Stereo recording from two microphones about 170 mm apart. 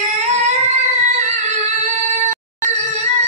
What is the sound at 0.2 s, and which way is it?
Music, 40° right (ahead or behind).